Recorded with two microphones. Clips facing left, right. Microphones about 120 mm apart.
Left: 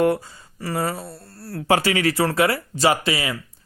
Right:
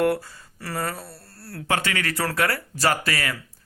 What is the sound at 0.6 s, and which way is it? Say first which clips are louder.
Speech: left 4 dB; 15° left (ahead or behind).